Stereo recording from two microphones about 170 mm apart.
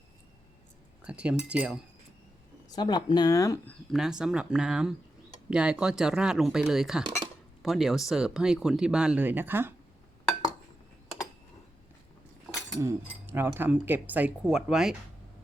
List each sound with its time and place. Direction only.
1.0 s speech: 5° right (ahead or behind)
2.6 s speech: 25° left (ahead or behind)
3.7 s speech: centre (ahead or behind)
12.8 s speech: 10° right (ahead or behind)